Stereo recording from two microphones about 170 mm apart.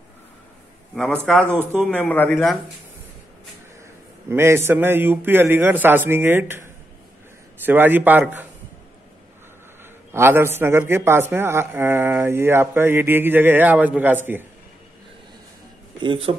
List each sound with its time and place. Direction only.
1.5 s a man's voice: 10° right (ahead or behind)
1.8 s a man's voice: 5° left (ahead or behind)
4.3 s a man's voice: 15° right (ahead or behind)
10.1 s a man's voice: 15° right (ahead or behind)
16.0 s a man's voice: 30° right (ahead or behind)